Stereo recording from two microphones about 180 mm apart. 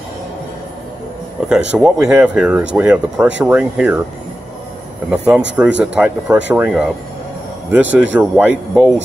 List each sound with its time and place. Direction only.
1.5 s speech: 5° right (ahead or behind)
5.1 s speech: 5° right (ahead or behind)